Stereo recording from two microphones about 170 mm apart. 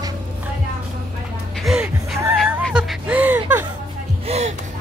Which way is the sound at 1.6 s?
5° right (ahead or behind).